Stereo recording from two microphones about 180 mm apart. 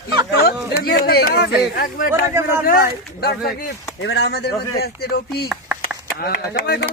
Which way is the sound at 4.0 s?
70° left (ahead or behind).